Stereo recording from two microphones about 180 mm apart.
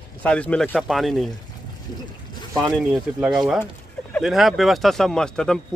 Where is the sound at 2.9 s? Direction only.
5° right (ahead or behind).